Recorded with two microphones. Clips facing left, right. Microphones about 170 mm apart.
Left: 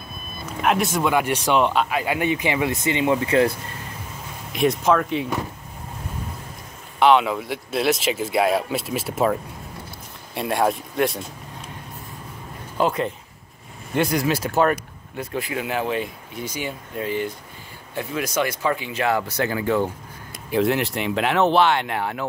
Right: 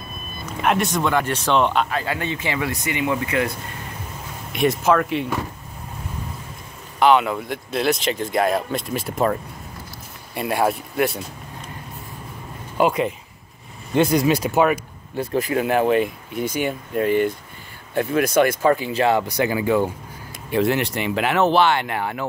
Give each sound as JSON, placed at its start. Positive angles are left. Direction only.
{"t": 0.5, "sound": "speech", "side_deg": 0}
{"t": 4.5, "sound": "speech", "side_deg": 0}
{"t": 7.0, "sound": "speech", "side_deg": 0}
{"t": 12.7, "sound": "speech", "side_deg": -10}
{"t": 15.1, "sound": "speech", "side_deg": -45}
{"t": 19.2, "sound": "speech", "side_deg": -15}
{"t": 20.4, "sound": "speech", "side_deg": 0}